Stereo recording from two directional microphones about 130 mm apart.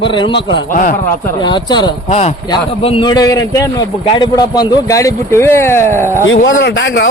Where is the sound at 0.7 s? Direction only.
90° left.